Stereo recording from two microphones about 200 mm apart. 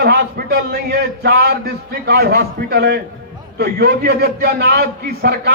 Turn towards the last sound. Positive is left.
turn(degrees=-50)  # may be behind; listen again after turning